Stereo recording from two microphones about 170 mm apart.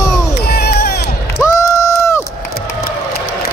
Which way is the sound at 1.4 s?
20° left (ahead or behind).